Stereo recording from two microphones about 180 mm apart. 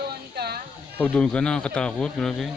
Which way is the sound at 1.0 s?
5° left (ahead or behind).